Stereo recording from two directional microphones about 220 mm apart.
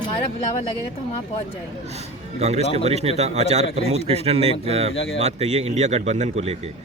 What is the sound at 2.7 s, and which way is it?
A man's voice, 30° right (ahead or behind).